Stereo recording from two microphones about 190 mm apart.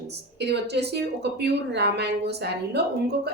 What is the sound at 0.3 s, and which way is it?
A woman's voice, 60° right (ahead or behind).